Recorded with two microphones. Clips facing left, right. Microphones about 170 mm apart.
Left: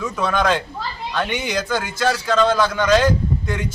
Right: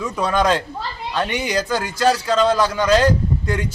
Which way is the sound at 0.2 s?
35° right (ahead or behind).